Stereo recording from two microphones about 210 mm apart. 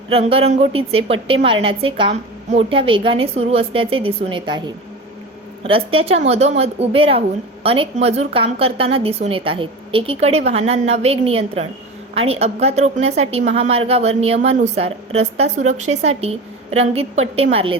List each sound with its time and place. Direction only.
0.1 s a woman's voice: 25° right (ahead or behind)